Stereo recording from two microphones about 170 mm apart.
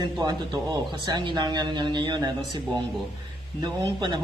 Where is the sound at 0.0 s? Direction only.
25° right (ahead or behind).